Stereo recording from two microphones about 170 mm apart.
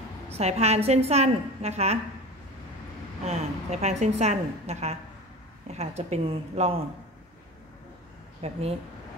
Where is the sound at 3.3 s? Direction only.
40° right (ahead or behind).